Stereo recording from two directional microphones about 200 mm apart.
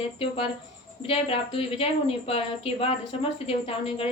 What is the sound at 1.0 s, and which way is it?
A woman's voice, 30° left (ahead or behind).